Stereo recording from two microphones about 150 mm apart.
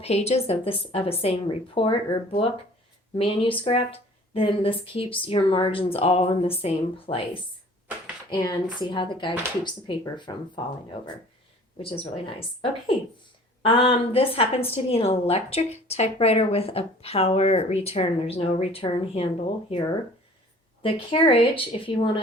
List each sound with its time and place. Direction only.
0.0 s a woman's voice: 45° left (ahead or behind)
8.3 s a woman's voice: 30° left (ahead or behind)
11.8 s a woman's voice: 40° left (ahead or behind)
13.6 s a woman's voice: 35° left (ahead or behind)
20.8 s a woman's voice: 35° left (ahead or behind)